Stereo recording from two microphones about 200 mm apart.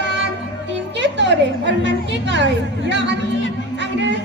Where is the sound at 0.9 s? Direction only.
60° right (ahead or behind).